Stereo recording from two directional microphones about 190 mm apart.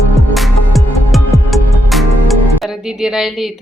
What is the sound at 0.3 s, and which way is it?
Music, centre (ahead or behind).